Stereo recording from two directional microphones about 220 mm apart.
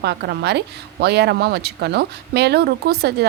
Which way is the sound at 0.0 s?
50° right (ahead or behind).